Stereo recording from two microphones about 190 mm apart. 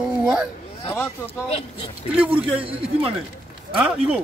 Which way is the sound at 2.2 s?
5° right (ahead or behind).